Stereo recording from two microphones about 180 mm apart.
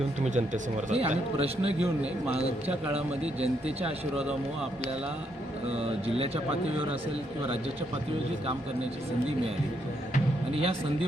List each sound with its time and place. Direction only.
0.3 s speech: 40° right (ahead or behind)
5.6 s speech: 35° right (ahead or behind)
10.5 s speech: 30° right (ahead or behind)